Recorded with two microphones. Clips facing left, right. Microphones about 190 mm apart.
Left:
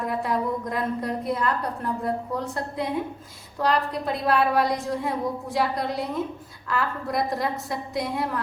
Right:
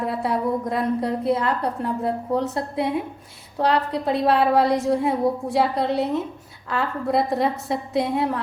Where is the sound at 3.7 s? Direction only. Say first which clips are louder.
Right 3 dB; 30° right (ahead or behind).